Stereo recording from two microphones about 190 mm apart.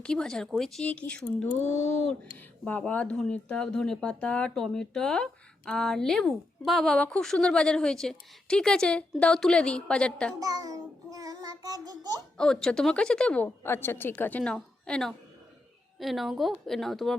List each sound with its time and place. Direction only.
0.0 s speech: 5° left (ahead or behind)
2.6 s speech: 10° left (ahead or behind)
10.4 s child singing: 20° right (ahead or behind)
12.4 s speech: 5° left (ahead or behind)